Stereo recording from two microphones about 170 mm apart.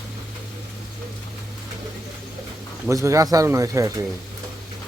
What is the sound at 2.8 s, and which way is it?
Speech, 15° right (ahead or behind).